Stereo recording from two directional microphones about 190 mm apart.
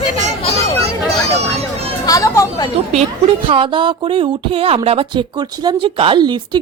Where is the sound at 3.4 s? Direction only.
25° right (ahead or behind).